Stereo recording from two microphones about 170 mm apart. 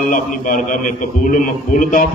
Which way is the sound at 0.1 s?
50° left (ahead or behind).